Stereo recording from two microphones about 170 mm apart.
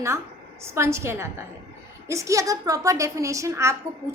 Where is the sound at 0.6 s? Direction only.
15° right (ahead or behind).